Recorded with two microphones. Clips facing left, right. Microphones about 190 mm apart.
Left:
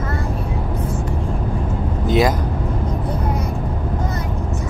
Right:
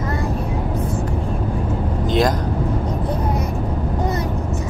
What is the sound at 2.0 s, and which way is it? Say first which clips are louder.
Vehicle: left 2 dB; 10° left (ahead or behind).